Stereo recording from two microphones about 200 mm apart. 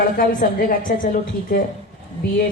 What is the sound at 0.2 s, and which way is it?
A woman's voice, 45° left (ahead or behind).